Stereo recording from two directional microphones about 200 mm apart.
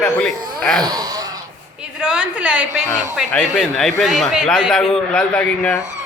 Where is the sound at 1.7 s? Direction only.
5° right (ahead or behind).